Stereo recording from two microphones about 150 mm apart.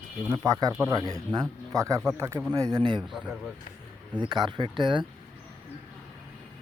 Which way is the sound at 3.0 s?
Centre (ahead or behind).